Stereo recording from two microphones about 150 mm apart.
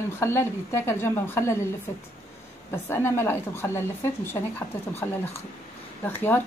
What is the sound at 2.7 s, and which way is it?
A woman's voice, 15° left (ahead or behind).